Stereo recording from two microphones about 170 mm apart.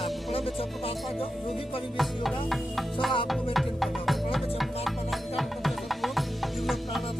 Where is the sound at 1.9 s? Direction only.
Centre (ahead or behind).